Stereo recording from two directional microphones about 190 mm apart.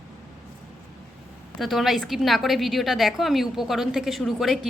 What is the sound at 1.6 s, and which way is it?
A woman's voice, centre (ahead or behind).